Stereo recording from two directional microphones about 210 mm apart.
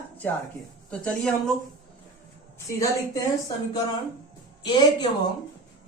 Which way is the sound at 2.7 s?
15° left (ahead or behind).